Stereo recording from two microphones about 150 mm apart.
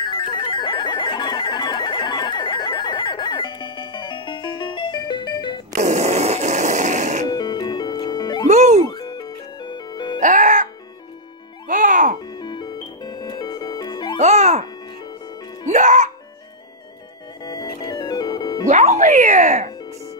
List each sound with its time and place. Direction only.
0.3 s music: 30° left (ahead or behind)
5.8 s music: 50° right (ahead or behind)
7.2 s music: 30° left (ahead or behind)
8.5 s music: 50° right (ahead or behind)
8.8 s music: 25° left (ahead or behind)
10.2 s music: 60° right (ahead or behind)
12.4 s music: 30° left (ahead or behind)
14.1 s music: 50° right (ahead or behind)
17.5 s music: 30° left (ahead or behind)
18.7 s music: 55° right (ahead or behind)